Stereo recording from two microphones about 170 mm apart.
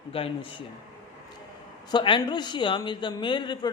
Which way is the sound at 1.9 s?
30° left (ahead or behind).